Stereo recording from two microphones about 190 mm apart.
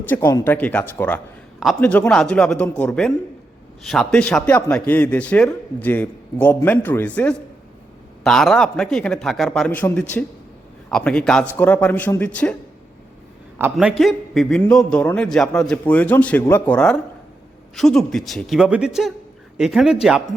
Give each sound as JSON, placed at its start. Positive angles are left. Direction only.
{"t": 0.3, "sound": "a man's voice", "side_deg": 15}
{"t": 13.6, "sound": "a man's voice", "side_deg": -5}